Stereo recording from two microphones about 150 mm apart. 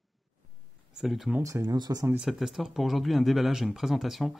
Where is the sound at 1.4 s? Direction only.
20° right (ahead or behind).